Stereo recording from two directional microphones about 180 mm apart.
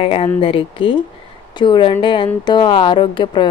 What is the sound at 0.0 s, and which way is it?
Speech, 30° left (ahead or behind).